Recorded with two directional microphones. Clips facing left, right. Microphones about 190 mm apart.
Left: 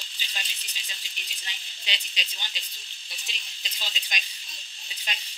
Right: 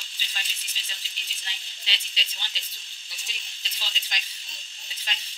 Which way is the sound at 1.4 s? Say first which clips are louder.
Left 2 dB; 15° left (ahead or behind).